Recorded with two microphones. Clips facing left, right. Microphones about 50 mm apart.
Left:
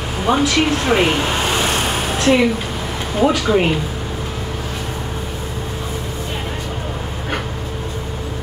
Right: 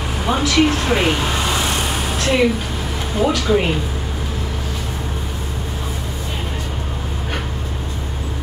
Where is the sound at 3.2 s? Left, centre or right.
Centre.